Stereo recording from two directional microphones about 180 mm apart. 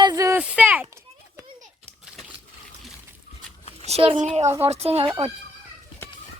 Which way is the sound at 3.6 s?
35° left (ahead or behind).